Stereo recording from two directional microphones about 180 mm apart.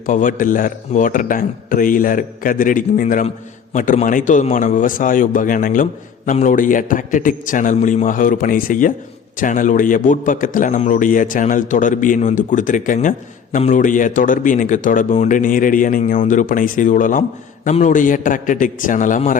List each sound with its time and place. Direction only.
0.0 s a man's voice: 45° left (ahead or behind)